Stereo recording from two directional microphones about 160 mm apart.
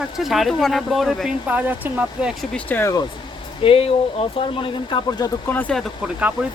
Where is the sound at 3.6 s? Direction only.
35° left (ahead or behind).